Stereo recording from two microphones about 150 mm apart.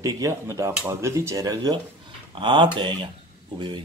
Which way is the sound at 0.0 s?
20° right (ahead or behind).